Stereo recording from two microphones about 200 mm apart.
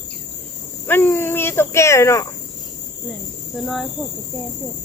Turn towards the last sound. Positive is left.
turn(degrees=0)  # may be behind; listen again after turning